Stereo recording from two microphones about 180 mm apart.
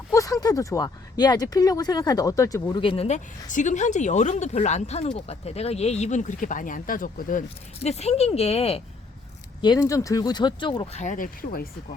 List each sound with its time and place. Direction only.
0.1 s speech: 20° left (ahead or behind); by 7.4 s 50° left (ahead or behind)
7.8 s speech: 35° left (ahead or behind)
9.6 s speech: 25° left (ahead or behind)
11.0 s speech: 45° left (ahead or behind)